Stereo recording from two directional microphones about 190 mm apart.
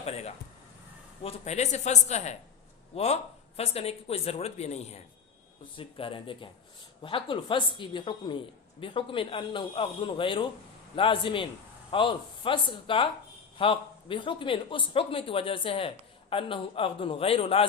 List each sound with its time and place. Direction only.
0.0 s a woman's voice: 35° left (ahead or behind)